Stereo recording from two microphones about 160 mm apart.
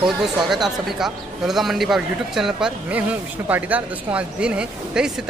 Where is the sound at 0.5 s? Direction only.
Centre (ahead or behind).